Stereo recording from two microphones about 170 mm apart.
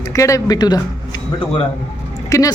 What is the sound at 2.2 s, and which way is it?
Speech, 20° left (ahead or behind).